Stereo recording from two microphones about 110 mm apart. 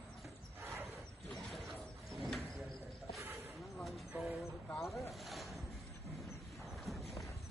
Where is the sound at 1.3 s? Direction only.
Centre (ahead or behind).